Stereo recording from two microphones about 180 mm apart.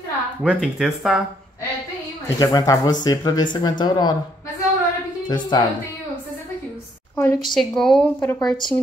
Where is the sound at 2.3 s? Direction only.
20° left (ahead or behind).